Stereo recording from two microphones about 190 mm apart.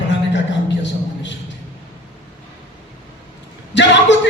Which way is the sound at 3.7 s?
70° left (ahead or behind).